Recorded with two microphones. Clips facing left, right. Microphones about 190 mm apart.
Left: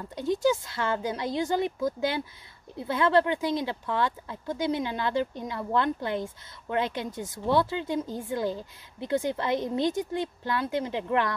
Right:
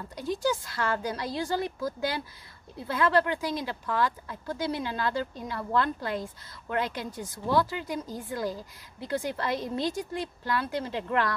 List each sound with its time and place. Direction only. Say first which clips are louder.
0.1 s speech: left 4 dB; 20° left (ahead or behind)